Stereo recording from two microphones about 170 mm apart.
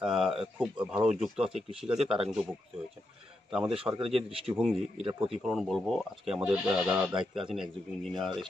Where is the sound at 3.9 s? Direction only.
15° right (ahead or behind).